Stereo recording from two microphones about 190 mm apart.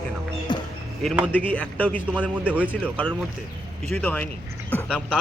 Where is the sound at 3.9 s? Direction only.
5° left (ahead or behind).